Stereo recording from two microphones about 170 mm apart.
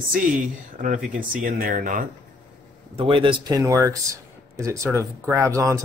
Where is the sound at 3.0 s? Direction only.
30° right (ahead or behind).